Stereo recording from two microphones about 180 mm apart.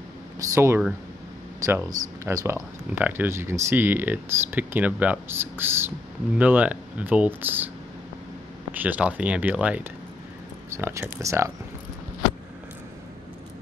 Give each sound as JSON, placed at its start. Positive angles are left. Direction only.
{"t": 0.6, "sound": "speech", "side_deg": -10}
{"t": 8.7, "sound": "speech", "side_deg": -10}